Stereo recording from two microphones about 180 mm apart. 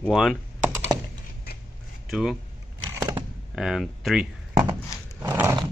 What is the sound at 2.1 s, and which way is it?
Speech, centre (ahead or behind).